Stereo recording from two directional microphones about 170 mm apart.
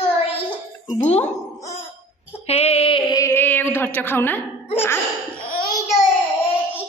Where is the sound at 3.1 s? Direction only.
20° left (ahead or behind).